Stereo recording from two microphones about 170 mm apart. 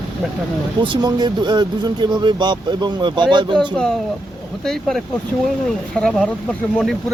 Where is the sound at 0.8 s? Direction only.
25° right (ahead or behind).